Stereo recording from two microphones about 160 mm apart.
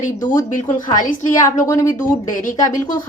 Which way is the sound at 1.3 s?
20° left (ahead or behind).